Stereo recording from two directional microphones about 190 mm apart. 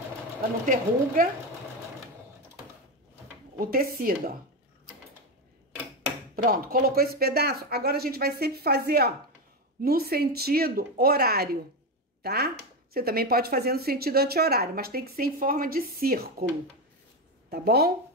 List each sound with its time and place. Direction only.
0.7 s speech: 45° right (ahead or behind)
3.5 s speech: 50° right (ahead or behind)
6.3 s speech: 50° right (ahead or behind)
17.5 s speech: 55° right (ahead or behind)